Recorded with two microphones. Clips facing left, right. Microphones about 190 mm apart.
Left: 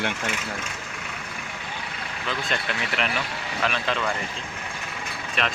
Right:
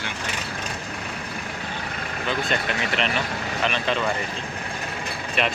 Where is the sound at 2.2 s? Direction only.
Centre (ahead or behind).